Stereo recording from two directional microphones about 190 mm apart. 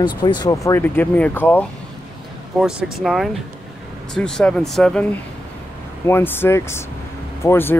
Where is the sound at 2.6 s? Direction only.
Centre (ahead or behind).